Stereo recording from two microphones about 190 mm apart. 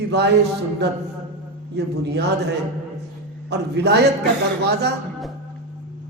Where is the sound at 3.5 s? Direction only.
60° right (ahead or behind).